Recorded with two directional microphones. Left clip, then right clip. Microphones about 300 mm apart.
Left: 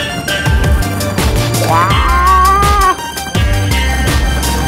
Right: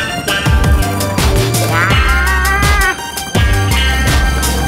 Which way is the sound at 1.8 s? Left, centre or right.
Centre.